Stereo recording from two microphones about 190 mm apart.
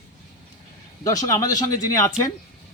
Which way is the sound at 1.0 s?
20° left (ahead or behind).